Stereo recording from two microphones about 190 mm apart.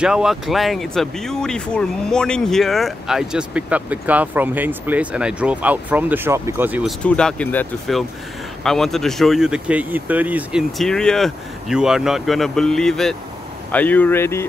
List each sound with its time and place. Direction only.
0.0 s speech: 5° right (ahead or behind)
7.0 s speech: 5° left (ahead or behind)